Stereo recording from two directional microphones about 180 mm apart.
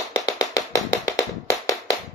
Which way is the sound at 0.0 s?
20° left (ahead or behind).